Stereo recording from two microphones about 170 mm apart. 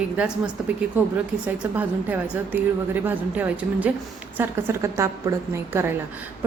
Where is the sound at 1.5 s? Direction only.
10° right (ahead or behind).